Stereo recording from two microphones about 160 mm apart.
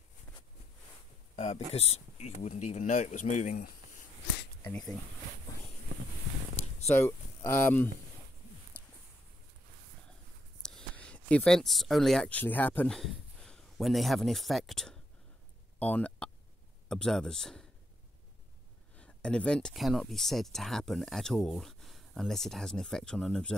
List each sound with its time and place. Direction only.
1.3 s speech: 45° left (ahead or behind)
4.6 s speech: 5° left (ahead or behind)
6.9 s speech: 15° left (ahead or behind)
10.6 s speech: 5° left (ahead or behind)
15.8 s a sound: 10° left (ahead or behind)
16.9 s speech: 5° left (ahead or behind)
18.9 s speech: 5° left (ahead or behind)